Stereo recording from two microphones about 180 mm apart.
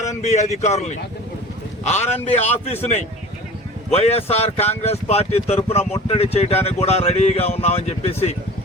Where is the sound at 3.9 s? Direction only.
35° left (ahead or behind).